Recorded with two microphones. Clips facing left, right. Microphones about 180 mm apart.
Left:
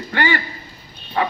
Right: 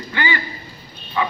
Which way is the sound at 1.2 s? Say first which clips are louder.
Left 2 dB; 55° left (ahead or behind).